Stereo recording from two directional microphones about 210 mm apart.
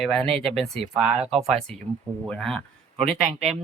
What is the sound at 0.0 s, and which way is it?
Speech, 5° left (ahead or behind).